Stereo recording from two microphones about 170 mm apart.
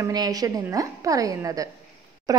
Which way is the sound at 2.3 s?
20° right (ahead or behind).